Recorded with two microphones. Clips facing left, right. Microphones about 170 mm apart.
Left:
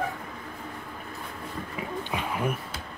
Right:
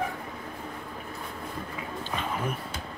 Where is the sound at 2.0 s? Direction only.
10° left (ahead or behind).